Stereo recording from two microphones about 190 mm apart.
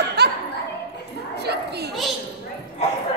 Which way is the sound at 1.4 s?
60° right (ahead or behind).